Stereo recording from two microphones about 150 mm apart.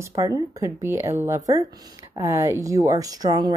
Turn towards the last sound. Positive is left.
turn(degrees=-25)  # may be behind; listen again after turning